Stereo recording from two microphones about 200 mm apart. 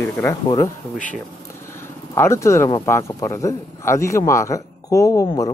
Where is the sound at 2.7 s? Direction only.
15° left (ahead or behind).